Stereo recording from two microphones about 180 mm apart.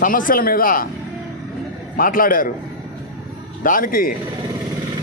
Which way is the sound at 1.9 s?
50° left (ahead or behind).